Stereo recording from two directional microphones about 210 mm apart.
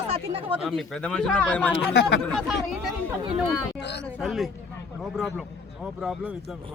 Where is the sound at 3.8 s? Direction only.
55° left (ahead or behind).